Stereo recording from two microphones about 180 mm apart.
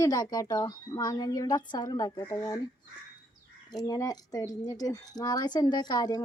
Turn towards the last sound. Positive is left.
turn(degrees=20)  # may be behind; listen again after turning